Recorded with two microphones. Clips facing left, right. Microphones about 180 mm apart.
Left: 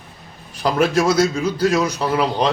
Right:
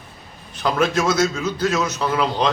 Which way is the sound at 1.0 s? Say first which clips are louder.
Left 3 dB; 10° left (ahead or behind).